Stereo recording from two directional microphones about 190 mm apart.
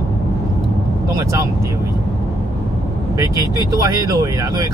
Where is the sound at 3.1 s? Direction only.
20° right (ahead or behind).